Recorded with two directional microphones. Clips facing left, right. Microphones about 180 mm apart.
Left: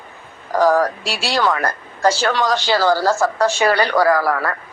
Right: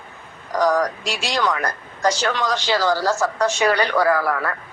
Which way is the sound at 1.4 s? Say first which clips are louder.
Left 4 dB; 55° left (ahead or behind).